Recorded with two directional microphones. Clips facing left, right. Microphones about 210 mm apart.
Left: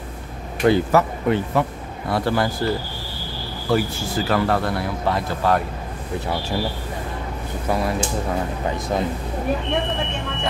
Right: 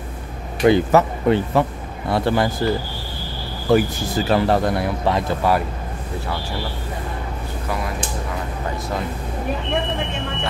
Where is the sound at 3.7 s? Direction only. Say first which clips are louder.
Right 4 dB; 20° right (ahead or behind).